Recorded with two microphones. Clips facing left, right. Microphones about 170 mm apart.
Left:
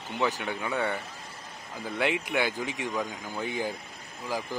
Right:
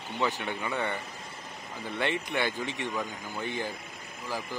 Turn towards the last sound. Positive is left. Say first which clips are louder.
# left 2 dB
turn(degrees=10)  # may be behind; listen again after turning